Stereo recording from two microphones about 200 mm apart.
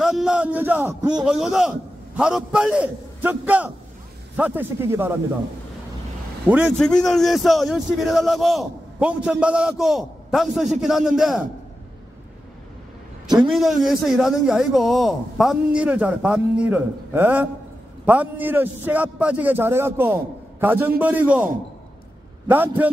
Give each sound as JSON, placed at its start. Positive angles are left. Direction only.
{"t": 0.0, "sound": "a sound", "side_deg": 0}
{"t": 1.2, "sound": "a man's voice", "side_deg": -5}
{"t": 6.5, "sound": "a man's voice", "side_deg": -10}
{"t": 6.8, "sound": "a man's voice", "side_deg": 5}
{"t": 13.6, "sound": "a man's voice", "side_deg": 0}
{"t": 22.5, "sound": "a man's voice", "side_deg": -10}